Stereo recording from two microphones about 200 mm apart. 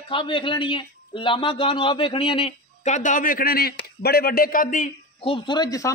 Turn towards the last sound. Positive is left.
turn(degrees=15)  # may be behind; listen again after turning